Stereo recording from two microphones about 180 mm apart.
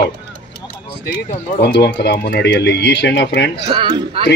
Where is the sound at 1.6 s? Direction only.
70° left (ahead or behind).